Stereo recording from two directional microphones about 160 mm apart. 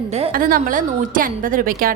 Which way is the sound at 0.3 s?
60° right (ahead or behind).